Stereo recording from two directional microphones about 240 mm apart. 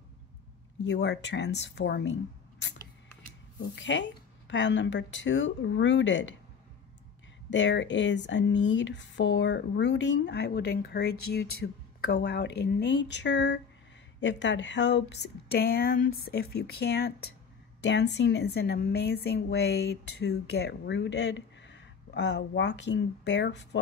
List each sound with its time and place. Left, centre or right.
0.8 s speech: left
3.7 s speech: left
7.4 s speech: left